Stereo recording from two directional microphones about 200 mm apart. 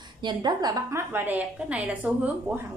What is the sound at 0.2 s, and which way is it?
A woman's voice, 20° right (ahead or behind).